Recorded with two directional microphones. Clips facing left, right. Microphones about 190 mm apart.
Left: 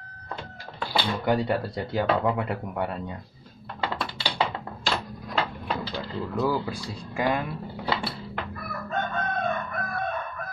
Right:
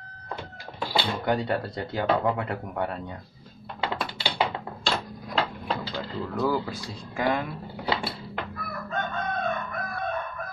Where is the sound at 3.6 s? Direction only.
15° right (ahead or behind).